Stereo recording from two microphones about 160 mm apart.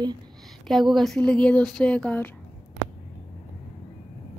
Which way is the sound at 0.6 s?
Centre (ahead or behind).